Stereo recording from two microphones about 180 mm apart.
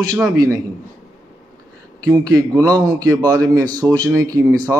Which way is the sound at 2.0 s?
20° right (ahead or behind).